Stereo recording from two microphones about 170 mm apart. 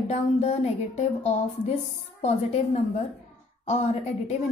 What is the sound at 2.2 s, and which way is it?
A woman's voice, 40° left (ahead or behind).